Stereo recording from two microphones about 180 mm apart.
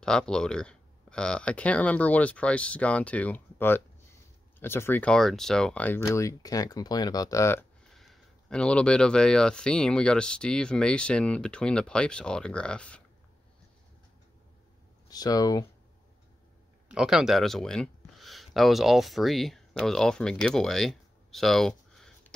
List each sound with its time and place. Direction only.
0.0 s speech: 5° left (ahead or behind)
7.9 s speech: centre (ahead or behind)
15.0 s speech: 20° left (ahead or behind)
16.9 s speech: 5° right (ahead or behind)